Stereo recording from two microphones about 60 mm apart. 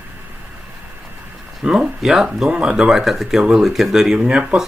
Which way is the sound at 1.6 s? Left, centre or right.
Centre.